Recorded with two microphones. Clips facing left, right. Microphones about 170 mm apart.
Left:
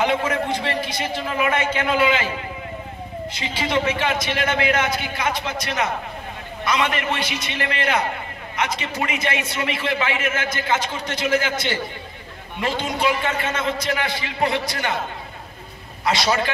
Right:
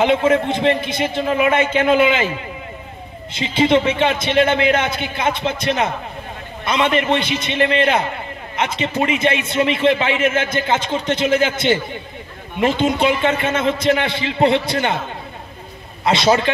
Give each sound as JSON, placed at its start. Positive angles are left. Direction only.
{"t": 0.0, "sound": "a man's voice", "side_deg": -25}
{"t": 3.3, "sound": "a man's voice", "side_deg": -25}
{"t": 16.0, "sound": "a man's voice", "side_deg": -25}